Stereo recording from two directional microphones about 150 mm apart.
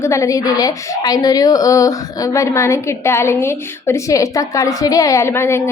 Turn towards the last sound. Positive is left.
turn(degrees=15)  # may be behind; listen again after turning